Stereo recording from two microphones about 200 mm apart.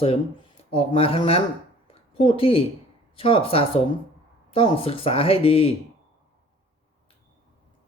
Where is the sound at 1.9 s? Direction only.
30° left (ahead or behind).